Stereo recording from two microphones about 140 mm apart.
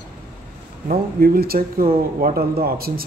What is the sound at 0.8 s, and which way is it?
Speech, 90° right.